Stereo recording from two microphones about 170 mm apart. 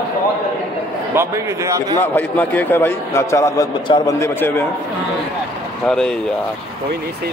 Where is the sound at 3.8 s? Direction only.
30° left (ahead or behind).